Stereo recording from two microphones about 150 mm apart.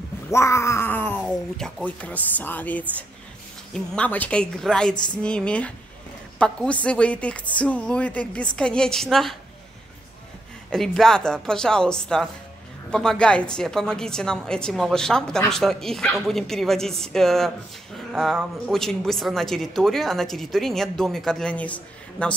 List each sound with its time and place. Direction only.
0.3 s cat: 20° left (ahead or behind)
1.2 s a woman's voice: 5° left (ahead or behind)
10.7 s a woman's voice: 5° left (ahead or behind)